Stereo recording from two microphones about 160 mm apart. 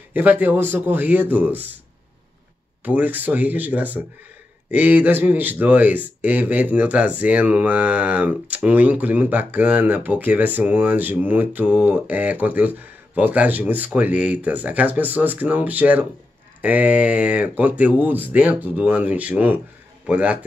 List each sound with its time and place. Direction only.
0.1 s speech: 10° right (ahead or behind)
2.8 s speech: 10° right (ahead or behind)